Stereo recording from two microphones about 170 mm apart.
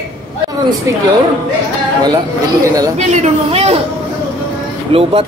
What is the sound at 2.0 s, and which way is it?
Speech, 20° right (ahead or behind).